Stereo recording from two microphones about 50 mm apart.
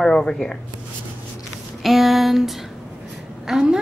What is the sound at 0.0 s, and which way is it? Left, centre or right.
Speech, centre.